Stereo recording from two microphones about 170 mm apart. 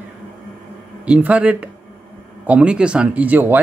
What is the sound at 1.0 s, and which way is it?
Speech, 10° right (ahead or behind).